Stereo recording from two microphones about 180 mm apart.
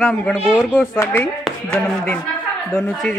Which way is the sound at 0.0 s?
5° left (ahead or behind).